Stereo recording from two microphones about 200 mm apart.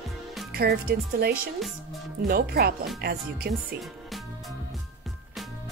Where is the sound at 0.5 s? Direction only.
50° right (ahead or behind).